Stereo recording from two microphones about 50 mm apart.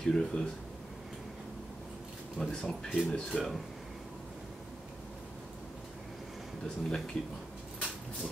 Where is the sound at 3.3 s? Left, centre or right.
Centre.